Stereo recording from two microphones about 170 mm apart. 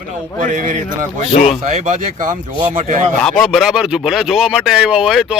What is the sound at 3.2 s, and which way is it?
A man's voice, centre (ahead or behind).